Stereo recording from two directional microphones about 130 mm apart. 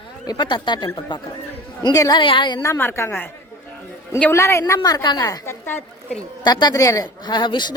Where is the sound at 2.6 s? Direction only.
20° left (ahead or behind).